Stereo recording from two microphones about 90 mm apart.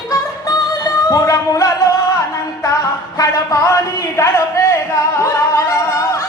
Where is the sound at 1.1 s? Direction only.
40° left (ahead or behind).